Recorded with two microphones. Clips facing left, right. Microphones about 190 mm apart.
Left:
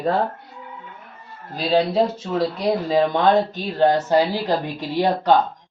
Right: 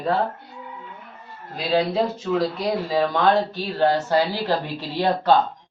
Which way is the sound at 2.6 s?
20° left (ahead or behind).